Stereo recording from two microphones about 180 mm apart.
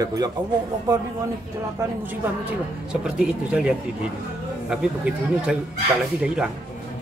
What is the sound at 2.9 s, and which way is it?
Speech, 5° right (ahead or behind).